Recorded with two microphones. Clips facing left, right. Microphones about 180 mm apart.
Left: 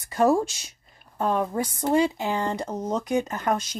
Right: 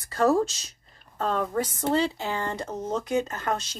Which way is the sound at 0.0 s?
15° left (ahead or behind).